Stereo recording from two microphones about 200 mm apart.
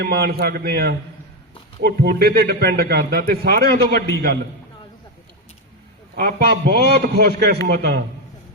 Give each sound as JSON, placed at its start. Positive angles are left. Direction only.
{"t": 0.0, "sound": "a man's voice", "side_deg": -50}
{"t": 6.2, "sound": "a man's voice", "side_deg": -55}